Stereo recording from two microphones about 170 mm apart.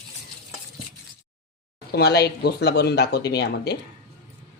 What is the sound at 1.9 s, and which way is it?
Speech, 70° left (ahead or behind).